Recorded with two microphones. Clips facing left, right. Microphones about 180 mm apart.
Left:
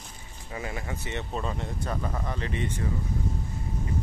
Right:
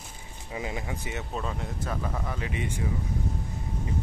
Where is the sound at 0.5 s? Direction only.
15° right (ahead or behind).